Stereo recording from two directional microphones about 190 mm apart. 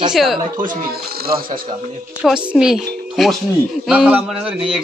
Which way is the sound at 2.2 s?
5° right (ahead or behind).